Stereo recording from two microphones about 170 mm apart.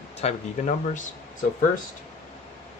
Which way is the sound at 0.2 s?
40° left (ahead or behind).